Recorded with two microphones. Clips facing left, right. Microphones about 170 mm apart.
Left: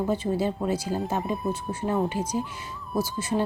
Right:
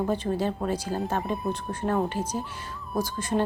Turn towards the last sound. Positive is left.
turn(degrees=10)  # may be behind; listen again after turning